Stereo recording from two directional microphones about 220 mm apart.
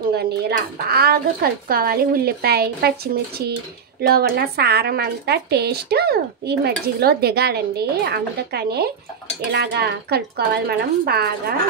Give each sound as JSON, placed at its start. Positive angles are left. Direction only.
{"t": 0.1, "sound": "speech", "side_deg": -45}